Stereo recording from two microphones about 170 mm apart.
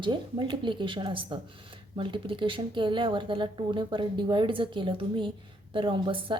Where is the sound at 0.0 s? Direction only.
30° right (ahead or behind).